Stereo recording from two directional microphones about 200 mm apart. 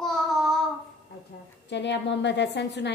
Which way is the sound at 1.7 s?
60° left (ahead or behind).